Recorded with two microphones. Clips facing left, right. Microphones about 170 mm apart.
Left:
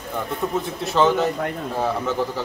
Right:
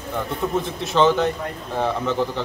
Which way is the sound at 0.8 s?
Centre (ahead or behind).